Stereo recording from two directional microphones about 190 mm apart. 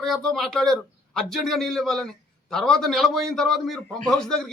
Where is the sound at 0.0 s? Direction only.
Centre (ahead or behind).